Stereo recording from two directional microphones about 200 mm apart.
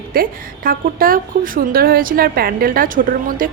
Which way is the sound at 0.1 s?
45° right (ahead or behind).